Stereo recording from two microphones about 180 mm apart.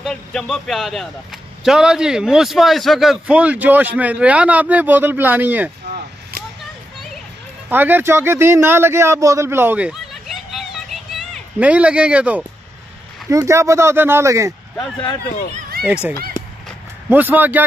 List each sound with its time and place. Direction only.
0.0 s a man's voice: 5° left (ahead or behind)
7.7 s a man's voice: 10° right (ahead or behind)
15.2 s speech: 55° left (ahead or behind)
15.8 s a man's voice: 5° right (ahead or behind)
17.1 s a man's voice: 10° right (ahead or behind)